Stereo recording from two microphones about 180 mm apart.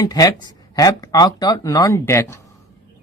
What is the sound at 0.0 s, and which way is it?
Speech, 20° left (ahead or behind).